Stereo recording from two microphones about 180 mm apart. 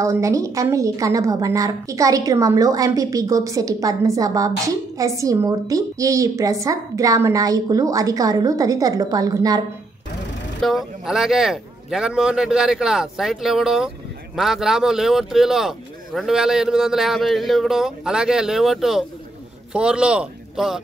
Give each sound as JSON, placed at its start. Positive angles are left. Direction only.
{"t": 0.0, "sound": "a woman's voice", "side_deg": -15}
{"t": 10.6, "sound": "speech", "side_deg": 0}